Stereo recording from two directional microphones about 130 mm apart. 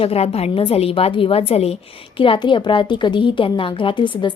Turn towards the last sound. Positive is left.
turn(degrees=35)  # may be behind; listen again after turning